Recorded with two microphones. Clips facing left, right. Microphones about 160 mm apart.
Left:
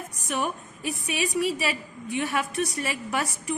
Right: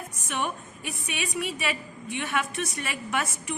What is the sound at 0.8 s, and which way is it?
A woman's voice, 35° left (ahead or behind).